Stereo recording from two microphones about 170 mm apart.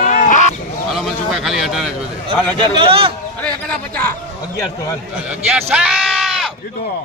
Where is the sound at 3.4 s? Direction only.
5° left (ahead or behind).